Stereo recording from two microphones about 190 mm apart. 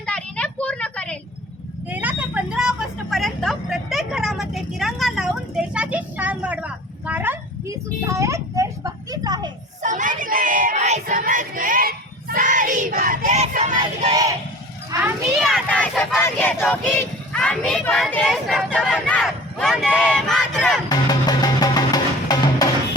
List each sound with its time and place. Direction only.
0.0 s a sound: 5° left (ahead or behind)
1.9 s vehicle: 10° right (ahead or behind)
9.8 s a sound: 40° right (ahead or behind)
14.1 s a sound: 20° right (ahead or behind)
14.8 s children playing: 15° right (ahead or behind)
15.4 s child singing: centre (ahead or behind)
18.1 s speech: centre (ahead or behind)
20.0 s battle cry: 5° left (ahead or behind)
20.9 s music: 20° left (ahead or behind)